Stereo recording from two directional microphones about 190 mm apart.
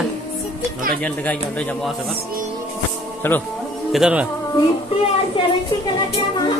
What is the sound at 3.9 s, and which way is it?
Speech, 5° right (ahead or behind).